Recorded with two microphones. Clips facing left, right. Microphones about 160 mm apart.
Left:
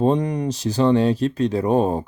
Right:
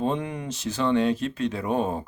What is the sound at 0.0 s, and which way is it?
Speech, 40° left (ahead or behind).